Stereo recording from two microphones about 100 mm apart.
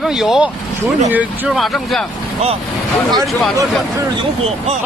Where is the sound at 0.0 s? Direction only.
5° right (ahead or behind).